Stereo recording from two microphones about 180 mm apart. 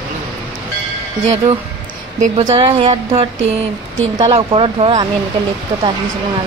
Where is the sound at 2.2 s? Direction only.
30° right (ahead or behind).